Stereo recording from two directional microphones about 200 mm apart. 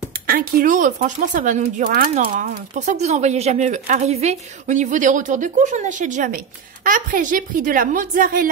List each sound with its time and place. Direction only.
0.3 s speech: 45° right (ahead or behind)
1.9 s speech: 50° right (ahead or behind)